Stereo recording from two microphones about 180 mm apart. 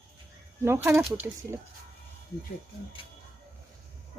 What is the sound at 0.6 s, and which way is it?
Speech, 15° right (ahead or behind).